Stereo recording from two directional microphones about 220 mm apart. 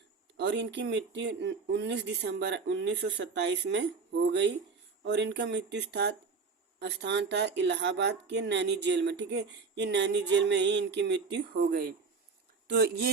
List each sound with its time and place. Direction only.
0.3 s speech: 55° right (ahead or behind)